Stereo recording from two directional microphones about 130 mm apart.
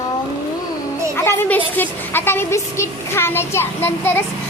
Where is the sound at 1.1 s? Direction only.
20° left (ahead or behind).